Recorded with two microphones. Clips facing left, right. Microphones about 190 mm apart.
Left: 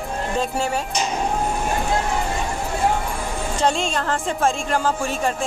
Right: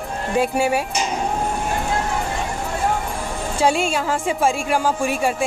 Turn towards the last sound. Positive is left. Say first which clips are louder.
# right 2 dB
turn(degrees=-10)  # may be behind; listen again after turning